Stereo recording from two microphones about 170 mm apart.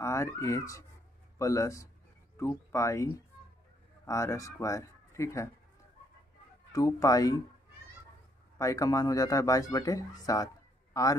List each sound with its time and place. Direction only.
0.0 s a man's voice: 15° left (ahead or behind)
6.7 s a man's voice: 20° left (ahead or behind)
8.5 s a man's voice: 20° left (ahead or behind)